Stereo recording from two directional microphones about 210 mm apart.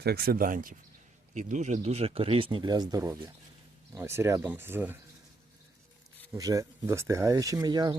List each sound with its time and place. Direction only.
0.0 s speech: 50° right (ahead or behind); by 4.9 s 10° right (ahead or behind)
6.3 s speech: 15° right (ahead or behind)